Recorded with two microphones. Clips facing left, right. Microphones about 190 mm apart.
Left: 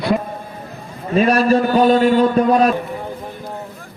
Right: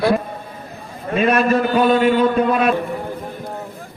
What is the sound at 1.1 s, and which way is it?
A man's voice, 35° left (ahead or behind).